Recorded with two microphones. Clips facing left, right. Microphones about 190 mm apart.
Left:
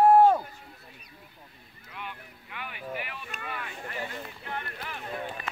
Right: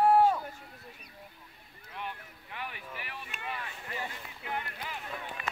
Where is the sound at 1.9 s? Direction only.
35° right (ahead or behind).